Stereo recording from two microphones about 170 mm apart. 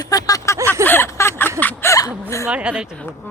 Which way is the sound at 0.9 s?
15° left (ahead or behind).